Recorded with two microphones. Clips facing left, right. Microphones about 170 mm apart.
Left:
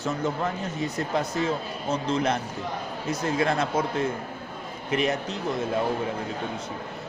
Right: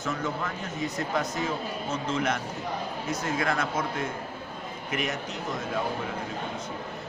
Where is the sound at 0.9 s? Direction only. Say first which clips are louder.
Left 3 dB; 30° left (ahead or behind).